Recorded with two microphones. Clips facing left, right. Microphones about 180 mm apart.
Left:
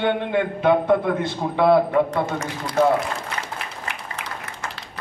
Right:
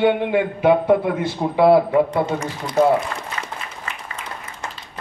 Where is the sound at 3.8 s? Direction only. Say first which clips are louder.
Even; 75° left (ahead or behind).